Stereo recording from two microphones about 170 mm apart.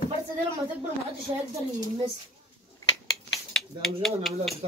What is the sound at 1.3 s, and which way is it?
Speech, 30° right (ahead or behind).